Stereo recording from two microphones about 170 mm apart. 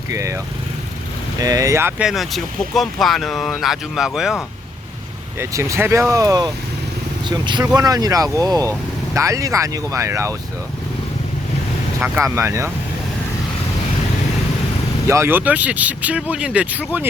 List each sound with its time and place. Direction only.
0.1 s speech: 20° right (ahead or behind)
1.4 s speech: 20° right (ahead or behind)
2.0 s speech: centre (ahead or behind)
5.4 s speech: 15° right (ahead or behind)
11.9 s speech: 10° right (ahead or behind)
15.0 s speech: 15° right (ahead or behind)